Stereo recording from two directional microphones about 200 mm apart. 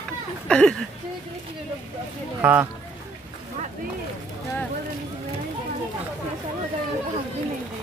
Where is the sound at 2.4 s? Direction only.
10° right (ahead or behind).